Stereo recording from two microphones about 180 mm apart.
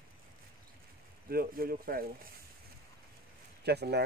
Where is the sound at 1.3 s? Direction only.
55° right (ahead or behind).